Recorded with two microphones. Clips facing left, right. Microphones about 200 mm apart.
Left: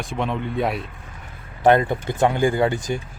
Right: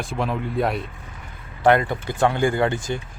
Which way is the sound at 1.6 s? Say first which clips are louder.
Left 1 dB; 20° left (ahead or behind).